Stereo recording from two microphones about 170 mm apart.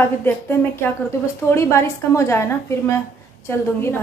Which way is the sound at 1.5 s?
15° left (ahead or behind).